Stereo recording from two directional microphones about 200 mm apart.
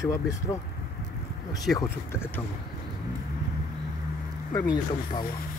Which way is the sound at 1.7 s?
15° left (ahead or behind).